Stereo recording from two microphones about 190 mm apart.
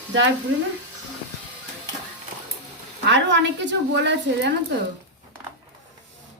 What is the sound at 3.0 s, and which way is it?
A woman's voice, 70° right (ahead or behind).